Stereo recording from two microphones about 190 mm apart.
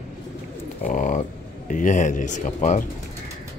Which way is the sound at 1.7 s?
40° left (ahead or behind).